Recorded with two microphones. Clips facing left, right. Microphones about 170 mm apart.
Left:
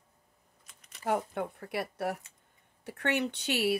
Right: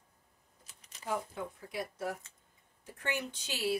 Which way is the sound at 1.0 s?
65° left (ahead or behind).